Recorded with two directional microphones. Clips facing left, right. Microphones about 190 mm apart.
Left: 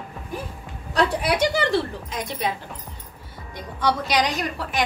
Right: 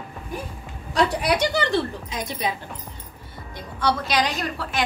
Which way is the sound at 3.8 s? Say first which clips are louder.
Left 1 dB; 15° left (ahead or behind).